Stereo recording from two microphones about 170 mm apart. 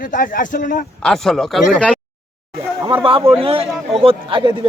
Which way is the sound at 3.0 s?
30° right (ahead or behind).